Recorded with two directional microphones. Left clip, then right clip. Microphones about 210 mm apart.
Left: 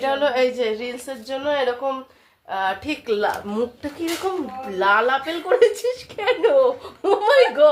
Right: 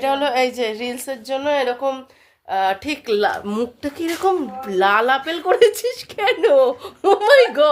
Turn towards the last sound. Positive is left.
turn(degrees=-55)  # may be behind; listen again after turning